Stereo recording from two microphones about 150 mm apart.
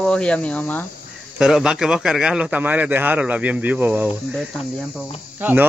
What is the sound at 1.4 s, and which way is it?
A man's voice, 5° right (ahead or behind).